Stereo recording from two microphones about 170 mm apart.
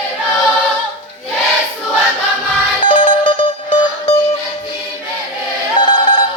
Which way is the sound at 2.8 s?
30° left (ahead or behind).